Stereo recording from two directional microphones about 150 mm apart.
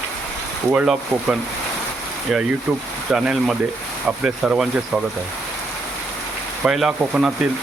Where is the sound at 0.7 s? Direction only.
5° right (ahead or behind).